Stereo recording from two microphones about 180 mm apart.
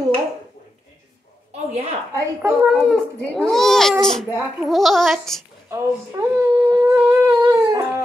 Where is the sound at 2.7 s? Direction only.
Centre (ahead or behind).